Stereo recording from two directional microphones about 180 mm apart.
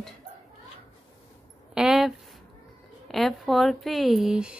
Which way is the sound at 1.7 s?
Centre (ahead or behind).